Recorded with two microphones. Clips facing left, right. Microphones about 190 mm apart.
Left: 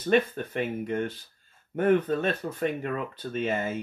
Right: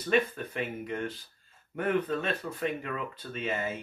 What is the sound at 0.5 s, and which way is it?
Speech, 50° left (ahead or behind).